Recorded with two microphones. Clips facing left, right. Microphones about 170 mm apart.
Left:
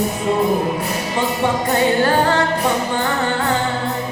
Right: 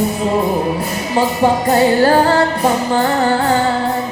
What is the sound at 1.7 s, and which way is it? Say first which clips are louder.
Music: right 4 dB; 35° right (ahead or behind).